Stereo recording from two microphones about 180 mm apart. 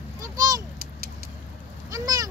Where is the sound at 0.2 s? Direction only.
20° right (ahead or behind).